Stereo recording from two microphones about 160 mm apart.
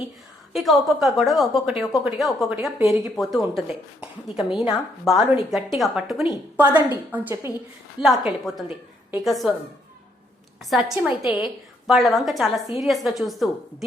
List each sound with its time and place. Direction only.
0.5 s a woman's voice: centre (ahead or behind)
8.0 s a woman's voice: centre (ahead or behind)
10.6 s a woman's voice: centre (ahead or behind)